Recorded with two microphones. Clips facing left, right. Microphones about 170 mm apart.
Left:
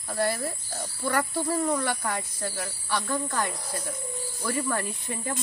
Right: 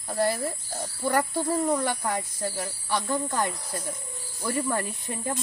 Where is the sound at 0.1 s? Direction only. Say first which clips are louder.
Right 2 dB; 15° right (ahead or behind).